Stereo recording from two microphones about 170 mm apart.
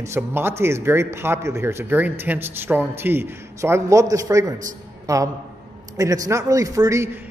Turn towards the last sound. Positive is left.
turn(degrees=-15)  # may be behind; listen again after turning